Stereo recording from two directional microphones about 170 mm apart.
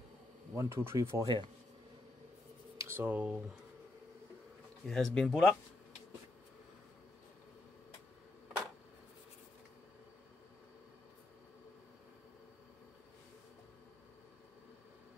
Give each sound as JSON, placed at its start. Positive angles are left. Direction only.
{"t": 0.6, "sound": "speech", "side_deg": -15}
{"t": 1.2, "sound": "speech", "side_deg": -30}
{"t": 2.8, "sound": "speech", "side_deg": -15}
{"t": 4.8, "sound": "speech", "side_deg": 5}